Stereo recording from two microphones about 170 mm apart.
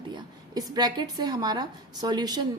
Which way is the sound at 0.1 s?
25° right (ahead or behind).